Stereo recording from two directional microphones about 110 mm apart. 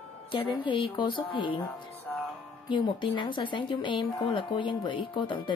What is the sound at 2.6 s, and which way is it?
Speech, 50° left (ahead or behind).